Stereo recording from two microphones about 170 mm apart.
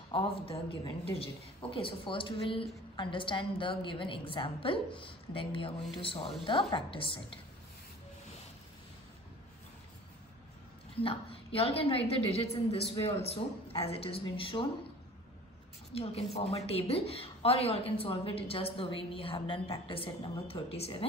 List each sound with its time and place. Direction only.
0.1 s a woman's voice: 30° left (ahead or behind)
11.0 s a woman's voice: 35° left (ahead or behind)
15.9 s a woman's voice: 35° left (ahead or behind)